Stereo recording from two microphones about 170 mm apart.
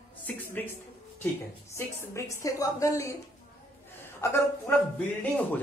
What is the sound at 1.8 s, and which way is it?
A woman's voice, 15° left (ahead or behind).